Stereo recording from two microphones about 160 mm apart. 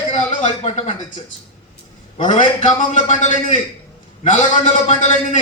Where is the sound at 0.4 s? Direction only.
40° left (ahead or behind).